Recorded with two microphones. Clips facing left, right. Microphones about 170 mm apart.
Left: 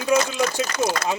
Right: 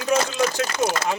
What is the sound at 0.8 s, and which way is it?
Speech, 15° right (ahead or behind).